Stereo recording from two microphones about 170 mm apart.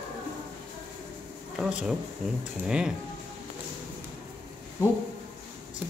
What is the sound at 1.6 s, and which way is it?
Speech, 5° right (ahead or behind).